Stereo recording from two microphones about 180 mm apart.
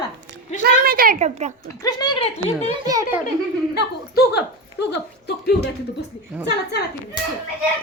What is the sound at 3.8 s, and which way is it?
A woman's voice, 65° left (ahead or behind).